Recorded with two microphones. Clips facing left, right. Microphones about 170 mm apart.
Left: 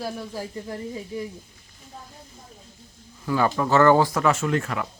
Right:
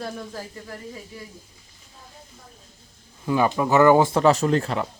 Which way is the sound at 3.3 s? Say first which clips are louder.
Right 1 dB; 15° right (ahead or behind).